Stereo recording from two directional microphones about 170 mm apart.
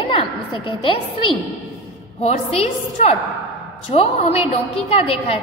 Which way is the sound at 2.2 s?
40° left (ahead or behind).